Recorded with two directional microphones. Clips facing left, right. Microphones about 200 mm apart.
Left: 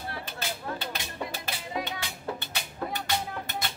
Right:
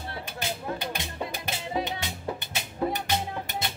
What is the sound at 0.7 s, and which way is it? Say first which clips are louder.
Music: right 2 dB; 15° right (ahead or behind).